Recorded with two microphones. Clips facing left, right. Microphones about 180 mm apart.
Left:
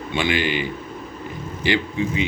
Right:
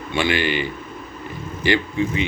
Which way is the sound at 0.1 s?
15° left (ahead or behind).